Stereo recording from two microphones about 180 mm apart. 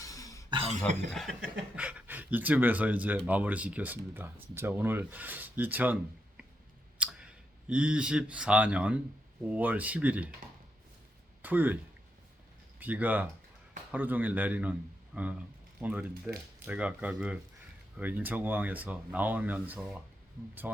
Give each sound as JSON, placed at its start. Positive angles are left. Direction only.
{"t": 0.0, "sound": "throat clearing", "side_deg": 20}
{"t": 0.5, "sound": "cough", "side_deg": -35}
{"t": 0.8, "sound": "speech", "side_deg": 0}
{"t": 7.0, "sound": "clicking", "side_deg": -5}
{"t": 7.7, "sound": "speech", "side_deg": -5}
{"t": 11.4, "sound": "speech", "side_deg": -10}
{"t": 12.8, "sound": "speech", "side_deg": -10}